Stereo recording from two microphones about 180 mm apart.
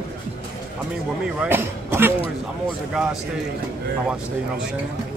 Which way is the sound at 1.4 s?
10° right (ahead or behind).